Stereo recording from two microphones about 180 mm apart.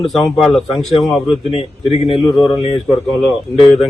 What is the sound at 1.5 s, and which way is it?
Speech, 30° left (ahead or behind).